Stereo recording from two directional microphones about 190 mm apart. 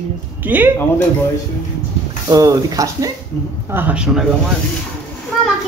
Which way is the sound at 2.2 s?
20° right (ahead or behind).